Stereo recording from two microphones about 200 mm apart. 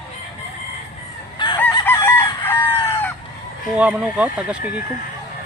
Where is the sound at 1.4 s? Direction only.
20° left (ahead or behind).